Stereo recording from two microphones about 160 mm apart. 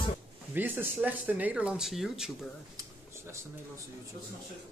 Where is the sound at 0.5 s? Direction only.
10° right (ahead or behind).